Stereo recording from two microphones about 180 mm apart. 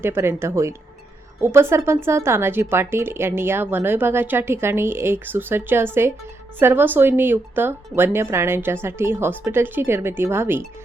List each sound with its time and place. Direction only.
0.0 s a woman's voice: 15° right (ahead or behind)